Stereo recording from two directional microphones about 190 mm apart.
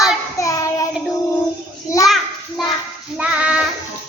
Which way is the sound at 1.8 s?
15° left (ahead or behind).